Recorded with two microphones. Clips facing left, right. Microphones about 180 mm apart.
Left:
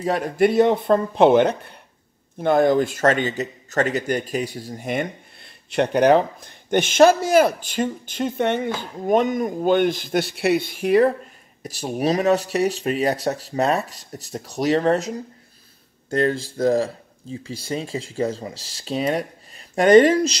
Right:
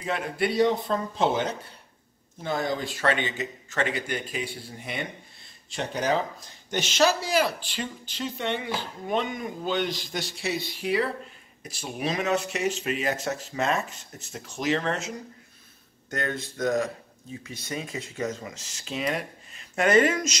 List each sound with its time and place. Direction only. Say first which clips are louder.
0.0 s speech: left 9 dB; 40° left (ahead or behind)
5.4 s speech: left 12 dB; 65° left (ahead or behind); by 20.3 s 35° left (ahead or behind)